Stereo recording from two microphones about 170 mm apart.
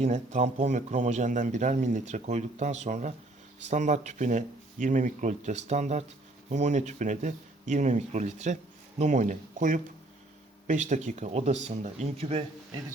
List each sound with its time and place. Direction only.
0.0 s speech: 45° right (ahead or behind)